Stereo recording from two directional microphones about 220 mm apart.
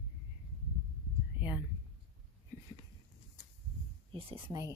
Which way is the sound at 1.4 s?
5° right (ahead or behind).